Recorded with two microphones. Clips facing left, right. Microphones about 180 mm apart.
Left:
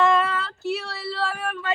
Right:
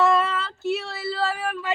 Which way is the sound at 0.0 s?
5° right (ahead or behind).